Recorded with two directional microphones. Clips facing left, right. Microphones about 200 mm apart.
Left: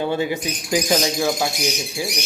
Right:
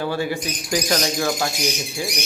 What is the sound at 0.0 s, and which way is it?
Speech, 20° left (ahead or behind).